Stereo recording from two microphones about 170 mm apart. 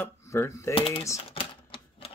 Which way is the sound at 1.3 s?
30° left (ahead or behind).